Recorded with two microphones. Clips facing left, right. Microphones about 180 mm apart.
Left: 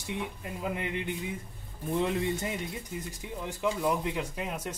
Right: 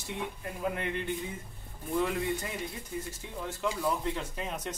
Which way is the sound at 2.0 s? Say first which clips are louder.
Left 1 dB; 20° left (ahead or behind).